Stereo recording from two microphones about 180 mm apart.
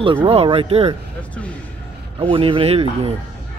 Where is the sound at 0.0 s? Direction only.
30° right (ahead or behind).